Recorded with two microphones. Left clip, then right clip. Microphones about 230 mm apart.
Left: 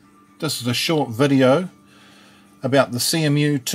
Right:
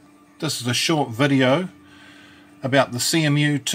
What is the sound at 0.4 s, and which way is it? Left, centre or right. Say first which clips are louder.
Speech: even; centre.